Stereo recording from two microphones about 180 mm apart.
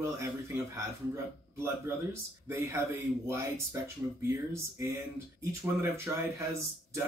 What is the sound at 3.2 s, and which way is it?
Speech, 15° right (ahead or behind).